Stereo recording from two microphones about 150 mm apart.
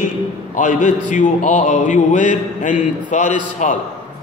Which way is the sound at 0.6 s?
60° left (ahead or behind).